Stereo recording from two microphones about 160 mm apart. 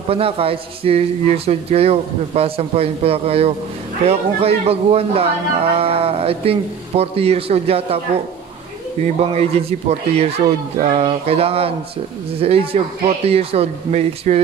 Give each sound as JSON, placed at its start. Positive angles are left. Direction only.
{"t": 0.1, "sound": "a man's voice", "side_deg": -35}
{"t": 9.0, "sound": "a man's voice", "side_deg": -40}